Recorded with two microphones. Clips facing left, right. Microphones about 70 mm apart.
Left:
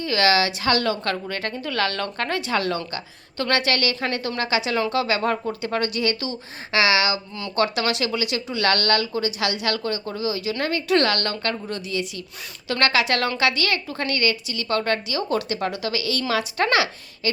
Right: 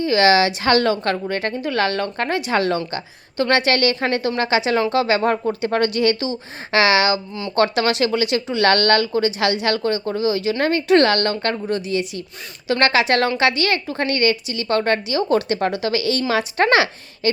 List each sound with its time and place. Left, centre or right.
0.0 s a woman's voice: right
2.5 s a woman's voice: right